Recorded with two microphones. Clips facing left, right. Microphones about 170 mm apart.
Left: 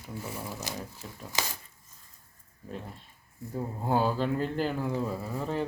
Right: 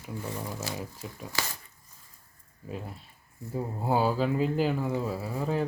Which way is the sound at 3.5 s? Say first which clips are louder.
Right 1 dB; 5° right (ahead or behind).